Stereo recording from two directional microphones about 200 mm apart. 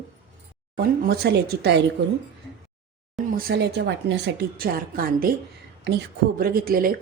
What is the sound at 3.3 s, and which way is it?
A woman's voice, 50° right (ahead or behind).